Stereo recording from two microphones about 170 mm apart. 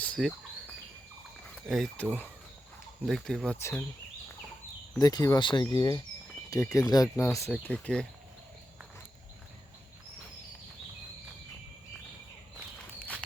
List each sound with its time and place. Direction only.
0.0 s bird: 5° left (ahead or behind)
1.6 s speech: centre (ahead or behind)
3.6 s speech: 15° left (ahead or behind)
4.9 s speech: 25° left (ahead or behind); by 8.0 s 5° left (ahead or behind)